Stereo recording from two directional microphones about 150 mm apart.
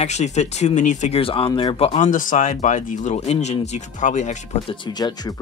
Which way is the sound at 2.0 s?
60° left (ahead or behind).